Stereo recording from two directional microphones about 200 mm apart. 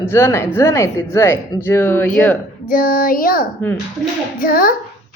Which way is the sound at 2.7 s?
45° left (ahead or behind).